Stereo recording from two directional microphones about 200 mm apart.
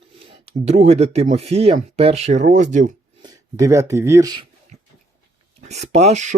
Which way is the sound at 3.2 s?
15° right (ahead or behind).